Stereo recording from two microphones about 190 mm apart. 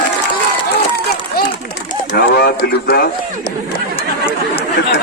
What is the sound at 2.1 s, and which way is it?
Speech, 60° left (ahead or behind).